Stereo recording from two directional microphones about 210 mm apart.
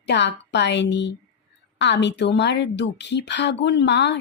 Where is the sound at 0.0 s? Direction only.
55° left (ahead or behind).